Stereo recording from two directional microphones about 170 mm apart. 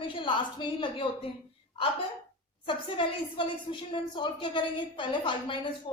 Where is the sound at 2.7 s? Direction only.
30° left (ahead or behind).